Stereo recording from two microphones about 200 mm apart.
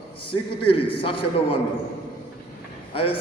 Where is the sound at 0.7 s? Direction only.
25° left (ahead or behind).